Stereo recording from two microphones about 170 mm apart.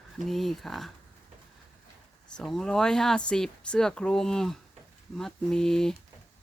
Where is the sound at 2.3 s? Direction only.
Centre (ahead or behind).